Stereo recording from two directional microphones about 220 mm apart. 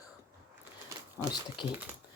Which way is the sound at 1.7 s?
10° right (ahead or behind).